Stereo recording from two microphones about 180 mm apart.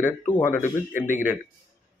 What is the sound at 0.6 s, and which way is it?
Speech, 45° left (ahead or behind).